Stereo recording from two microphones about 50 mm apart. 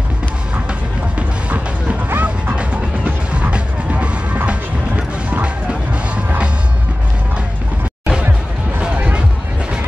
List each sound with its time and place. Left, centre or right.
2.1 s music: right
3.3 s music: right
5.4 s music: right
8.9 s music: right